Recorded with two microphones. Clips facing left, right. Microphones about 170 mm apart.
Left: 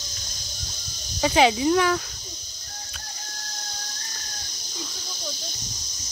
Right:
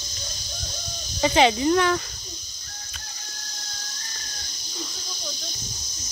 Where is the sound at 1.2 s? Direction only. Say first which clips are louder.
Even; 5° left (ahead or behind).